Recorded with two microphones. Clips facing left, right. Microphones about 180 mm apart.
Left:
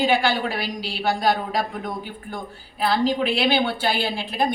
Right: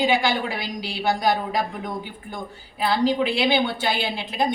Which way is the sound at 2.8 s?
20° right (ahead or behind).